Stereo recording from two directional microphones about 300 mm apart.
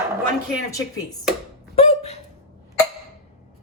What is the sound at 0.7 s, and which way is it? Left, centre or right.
Speech, centre.